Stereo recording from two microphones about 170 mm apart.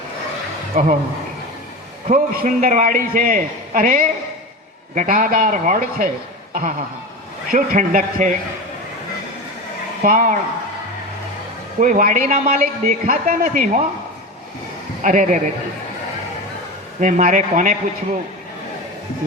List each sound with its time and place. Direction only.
0.7 s a man's voice: 50° right (ahead or behind)
2.0 s a man's voice: 50° right (ahead or behind)
6.5 s a sound: 50° right (ahead or behind)
7.5 s a man's voice: 50° right (ahead or behind)
10.0 s a man's voice: 50° right (ahead or behind)
11.8 s a man's voice: 50° right (ahead or behind)
15.0 s a man's voice: 50° right (ahead or behind)
17.0 s a man's voice: 45° right (ahead or behind)